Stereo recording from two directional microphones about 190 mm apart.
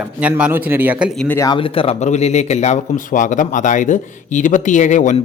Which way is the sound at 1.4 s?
25° left (ahead or behind).